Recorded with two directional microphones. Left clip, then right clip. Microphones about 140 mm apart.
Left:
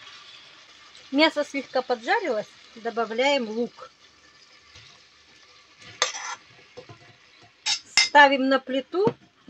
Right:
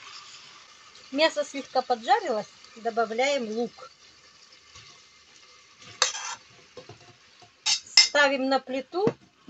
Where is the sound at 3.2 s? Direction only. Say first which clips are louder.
Left 6 dB; 40° left (ahead or behind).